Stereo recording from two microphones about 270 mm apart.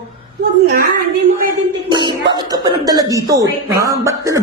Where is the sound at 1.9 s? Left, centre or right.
Centre.